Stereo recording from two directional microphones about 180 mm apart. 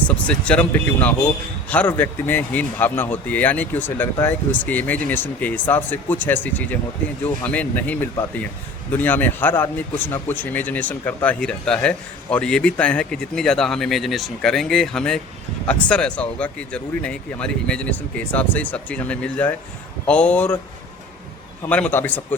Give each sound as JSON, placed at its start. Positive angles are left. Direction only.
{"t": 0.3, "sound": "speech", "side_deg": 5}
{"t": 21.7, "sound": "speech", "side_deg": 10}